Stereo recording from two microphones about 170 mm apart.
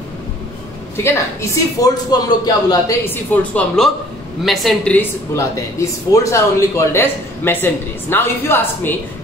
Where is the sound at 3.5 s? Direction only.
5° left (ahead or behind).